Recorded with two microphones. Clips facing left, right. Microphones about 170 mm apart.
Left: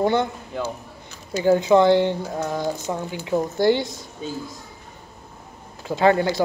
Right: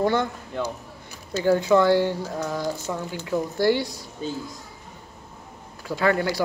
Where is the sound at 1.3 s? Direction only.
20° left (ahead or behind).